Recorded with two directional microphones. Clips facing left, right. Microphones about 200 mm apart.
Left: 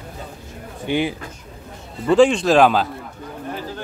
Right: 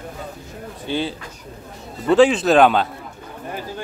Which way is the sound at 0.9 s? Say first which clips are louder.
Left 3 dB; 15° left (ahead or behind).